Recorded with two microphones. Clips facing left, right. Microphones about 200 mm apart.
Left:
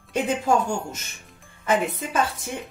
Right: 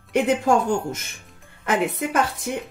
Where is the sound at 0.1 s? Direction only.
60° right (ahead or behind).